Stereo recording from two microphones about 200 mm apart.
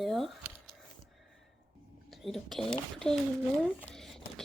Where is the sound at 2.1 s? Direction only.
Centre (ahead or behind).